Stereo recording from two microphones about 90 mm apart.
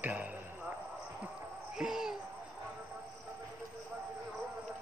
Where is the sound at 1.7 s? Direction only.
5° right (ahead or behind).